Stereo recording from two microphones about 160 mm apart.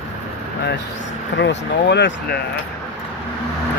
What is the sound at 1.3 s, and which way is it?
Speech, 90° left.